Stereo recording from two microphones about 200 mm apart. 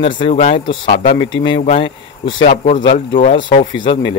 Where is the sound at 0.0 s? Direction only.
30° left (ahead or behind).